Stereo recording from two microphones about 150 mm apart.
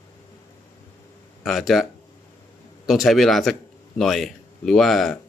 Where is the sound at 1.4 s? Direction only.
Centre (ahead or behind).